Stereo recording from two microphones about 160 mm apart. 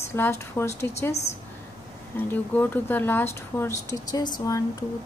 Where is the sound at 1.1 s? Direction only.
45° left (ahead or behind).